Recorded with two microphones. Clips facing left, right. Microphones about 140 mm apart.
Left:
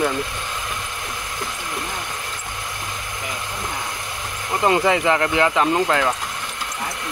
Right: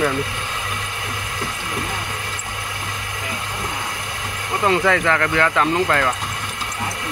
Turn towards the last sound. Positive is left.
turn(degrees=15)  # may be behind; listen again after turning